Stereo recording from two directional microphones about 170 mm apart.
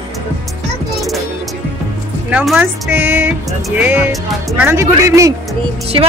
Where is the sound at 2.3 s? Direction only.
5° right (ahead or behind).